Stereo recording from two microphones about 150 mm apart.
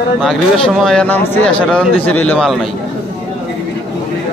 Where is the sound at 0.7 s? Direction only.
Centre (ahead or behind).